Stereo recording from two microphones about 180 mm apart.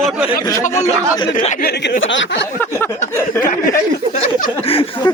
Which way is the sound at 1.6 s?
60° left (ahead or behind).